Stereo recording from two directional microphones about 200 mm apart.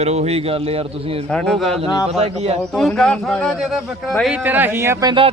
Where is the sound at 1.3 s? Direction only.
5° left (ahead or behind).